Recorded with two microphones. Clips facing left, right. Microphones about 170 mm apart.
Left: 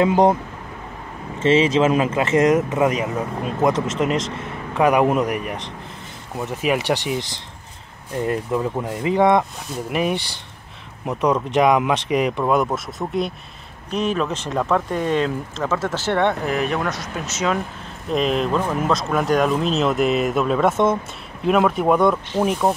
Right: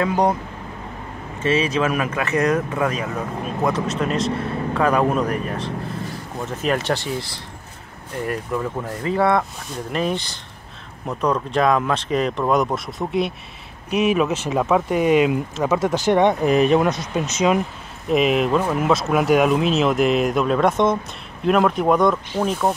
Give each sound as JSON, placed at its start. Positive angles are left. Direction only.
{"t": 0.0, "sound": "speech", "side_deg": 20}
{"t": 1.4, "sound": "speech", "side_deg": 25}
{"t": 18.1, "sound": "speech", "side_deg": -5}